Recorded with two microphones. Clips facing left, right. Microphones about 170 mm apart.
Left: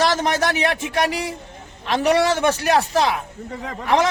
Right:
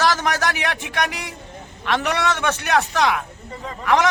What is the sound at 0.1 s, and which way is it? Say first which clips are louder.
A man's voice: left 2 dB; 25° left (ahead or behind).